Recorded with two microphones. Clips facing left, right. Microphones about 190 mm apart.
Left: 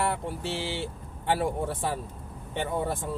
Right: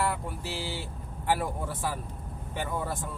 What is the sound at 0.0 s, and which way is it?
Speech, 25° left (ahead or behind).